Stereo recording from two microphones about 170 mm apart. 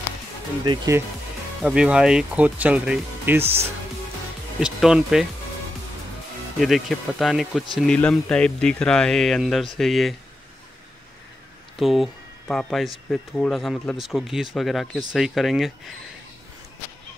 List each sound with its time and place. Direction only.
0.7 s speech: 20° right (ahead or behind)
1.6 s speech: 5° right (ahead or behind)
4.6 s speech: 5° right (ahead or behind)
6.6 s speech: centre (ahead or behind)
11.8 s speech: centre (ahead or behind)